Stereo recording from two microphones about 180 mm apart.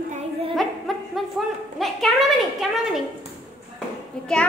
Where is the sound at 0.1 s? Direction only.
30° right (ahead or behind).